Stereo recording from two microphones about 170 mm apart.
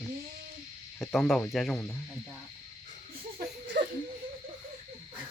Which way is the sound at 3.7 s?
80° right.